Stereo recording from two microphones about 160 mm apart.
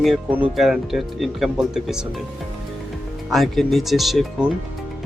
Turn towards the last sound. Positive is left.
turn(degrees=0)  # may be behind; listen again after turning